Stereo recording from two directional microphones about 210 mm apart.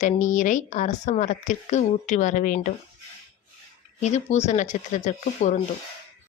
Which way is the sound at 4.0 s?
30° left (ahead or behind).